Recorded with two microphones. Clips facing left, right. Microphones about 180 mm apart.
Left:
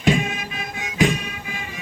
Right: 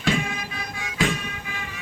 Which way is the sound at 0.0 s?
20° left (ahead or behind).